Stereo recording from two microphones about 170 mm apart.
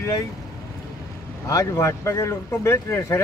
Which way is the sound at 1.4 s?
20° left (ahead or behind).